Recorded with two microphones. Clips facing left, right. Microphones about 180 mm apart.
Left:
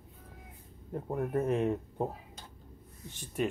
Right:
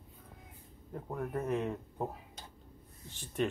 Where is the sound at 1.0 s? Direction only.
25° left (ahead or behind).